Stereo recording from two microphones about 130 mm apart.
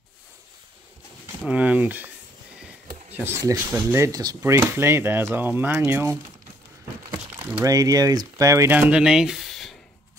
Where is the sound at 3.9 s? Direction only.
25° right (ahead or behind).